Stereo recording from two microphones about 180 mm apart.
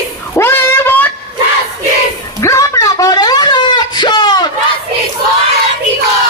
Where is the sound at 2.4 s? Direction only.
15° left (ahead or behind).